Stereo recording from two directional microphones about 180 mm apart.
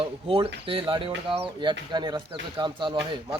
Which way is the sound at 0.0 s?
30° right (ahead or behind).